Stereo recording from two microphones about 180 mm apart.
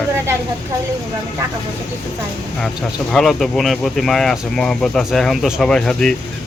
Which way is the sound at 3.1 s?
Centre (ahead or behind).